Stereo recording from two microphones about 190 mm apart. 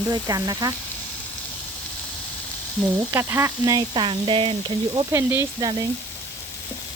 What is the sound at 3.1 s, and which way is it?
Frying, 15° right (ahead or behind).